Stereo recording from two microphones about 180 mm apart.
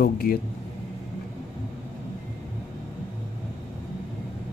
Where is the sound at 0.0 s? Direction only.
55° left (ahead or behind).